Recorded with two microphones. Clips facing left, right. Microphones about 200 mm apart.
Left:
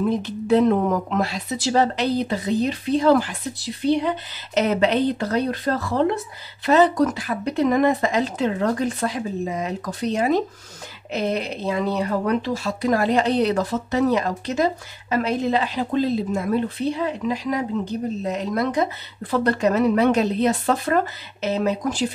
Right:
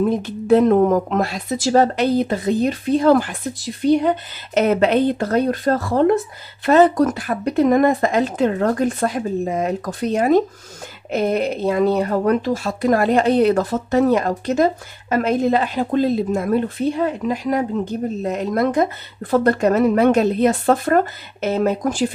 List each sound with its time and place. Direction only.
0.1 s a woman's voice: 50° right (ahead or behind)